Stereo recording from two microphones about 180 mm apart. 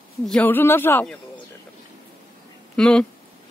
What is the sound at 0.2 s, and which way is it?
Speech, 5° left (ahead or behind).